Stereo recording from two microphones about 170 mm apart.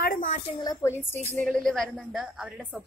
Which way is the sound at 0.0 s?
50° left (ahead or behind).